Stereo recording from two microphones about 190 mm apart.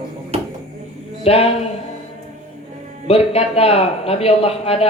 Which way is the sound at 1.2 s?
30° left (ahead or behind).